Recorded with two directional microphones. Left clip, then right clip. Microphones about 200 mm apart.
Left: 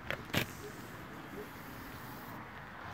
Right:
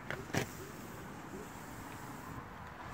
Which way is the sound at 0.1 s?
30° left (ahead or behind).